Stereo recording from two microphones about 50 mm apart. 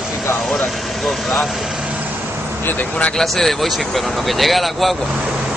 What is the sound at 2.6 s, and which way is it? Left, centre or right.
Speech, left.